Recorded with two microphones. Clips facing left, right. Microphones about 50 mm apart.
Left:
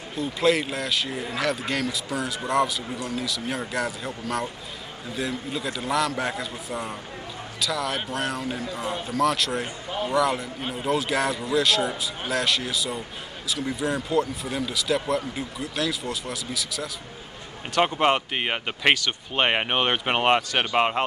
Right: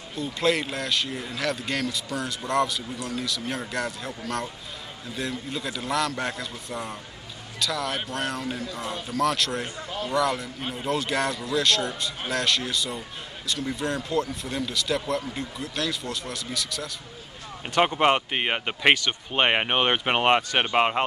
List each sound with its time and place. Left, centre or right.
0.1 s speech: centre
9.8 s a man's voice: centre
10.1 s speech: centre
17.7 s speech: centre